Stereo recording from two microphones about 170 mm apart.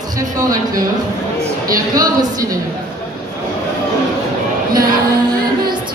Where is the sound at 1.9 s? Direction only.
20° right (ahead or behind).